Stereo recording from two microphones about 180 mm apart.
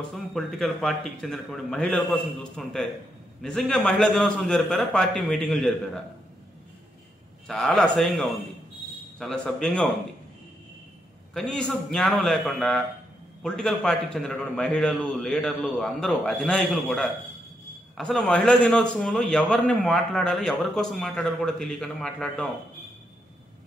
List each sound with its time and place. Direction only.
0.1 s a man's voice: centre (ahead or behind)
7.4 s a man's voice: centre (ahead or behind)
11.3 s a man's voice: 5° left (ahead or behind)